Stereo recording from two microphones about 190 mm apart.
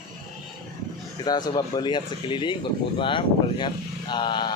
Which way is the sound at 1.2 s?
20° left (ahead or behind).